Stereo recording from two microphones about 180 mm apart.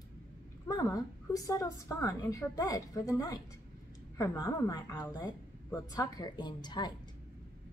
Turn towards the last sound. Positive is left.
turn(degrees=25)  # may be behind; listen again after turning